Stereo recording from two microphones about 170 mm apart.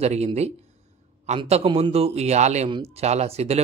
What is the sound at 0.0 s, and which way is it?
Speech, 40° right (ahead or behind).